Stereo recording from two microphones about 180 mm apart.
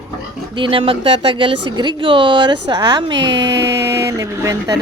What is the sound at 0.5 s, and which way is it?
A woman's voice, 30° right (ahead or behind).